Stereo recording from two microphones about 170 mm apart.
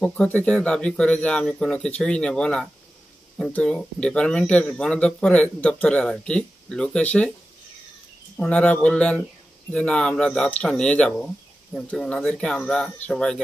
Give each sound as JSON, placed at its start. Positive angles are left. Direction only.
{"t": 0.0, "sound": "speech", "side_deg": 5}
{"t": 8.4, "sound": "speech", "side_deg": 10}